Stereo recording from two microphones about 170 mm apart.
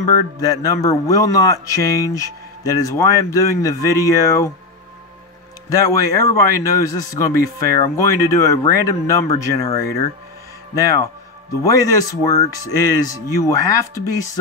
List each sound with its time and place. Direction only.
0.1 s speech: 20° left (ahead or behind)
5.7 s speech: 20° left (ahead or behind)
10.7 s speech: 20° left (ahead or behind)